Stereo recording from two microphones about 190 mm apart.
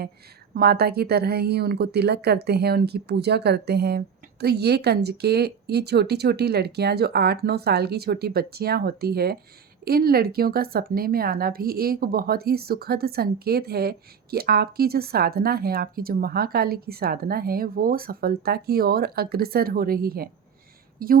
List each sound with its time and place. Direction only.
0.5 s a woman's voice: 55° right (ahead or behind)